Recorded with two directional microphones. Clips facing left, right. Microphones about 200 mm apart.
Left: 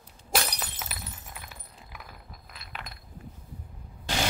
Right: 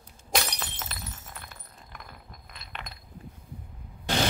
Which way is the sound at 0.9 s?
10° left (ahead or behind).